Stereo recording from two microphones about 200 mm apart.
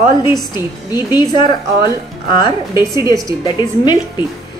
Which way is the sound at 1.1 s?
20° left (ahead or behind).